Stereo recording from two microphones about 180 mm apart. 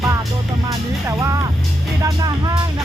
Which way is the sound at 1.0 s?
15° right (ahead or behind).